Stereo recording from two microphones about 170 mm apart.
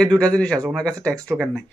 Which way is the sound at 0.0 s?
5° left (ahead or behind).